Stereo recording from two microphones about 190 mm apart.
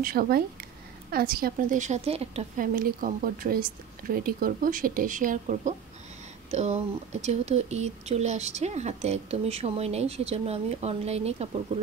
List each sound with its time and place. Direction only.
0.0 s speech: 50° right (ahead or behind); by 2.6 s 35° right (ahead or behind)
2.6 s speech: 50° right (ahead or behind)